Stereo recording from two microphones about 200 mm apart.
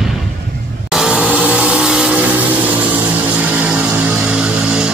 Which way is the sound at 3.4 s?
5° right (ahead or behind).